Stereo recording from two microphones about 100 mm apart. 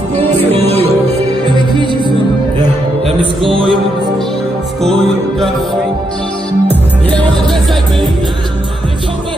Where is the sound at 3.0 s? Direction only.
60° right (ahead or behind).